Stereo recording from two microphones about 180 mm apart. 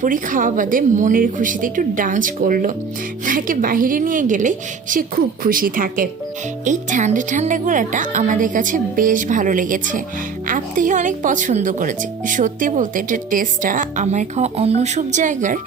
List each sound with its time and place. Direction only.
0.0 s speech: 50° right (ahead or behind)